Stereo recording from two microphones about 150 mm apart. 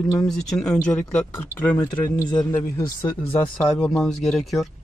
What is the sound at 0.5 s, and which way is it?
Speech, 5° left (ahead or behind).